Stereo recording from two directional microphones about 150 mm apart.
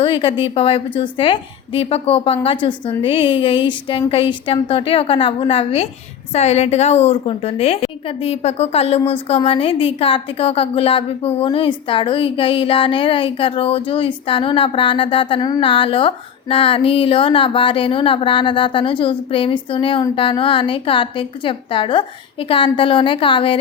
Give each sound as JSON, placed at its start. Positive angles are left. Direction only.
{"t": 0.0, "sound": "a woman's voice", "side_deg": 35}